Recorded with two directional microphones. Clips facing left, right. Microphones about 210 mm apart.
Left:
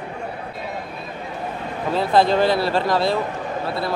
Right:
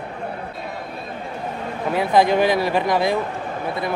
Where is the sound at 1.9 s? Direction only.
15° right (ahead or behind).